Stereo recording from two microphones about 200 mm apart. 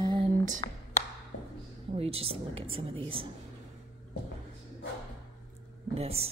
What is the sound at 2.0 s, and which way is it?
A woman's voice, 30° right (ahead or behind).